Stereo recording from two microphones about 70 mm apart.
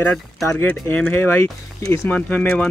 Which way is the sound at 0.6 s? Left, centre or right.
Left.